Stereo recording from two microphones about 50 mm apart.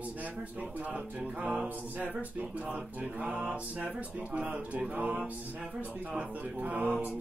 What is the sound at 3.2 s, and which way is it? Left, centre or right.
Speech, centre.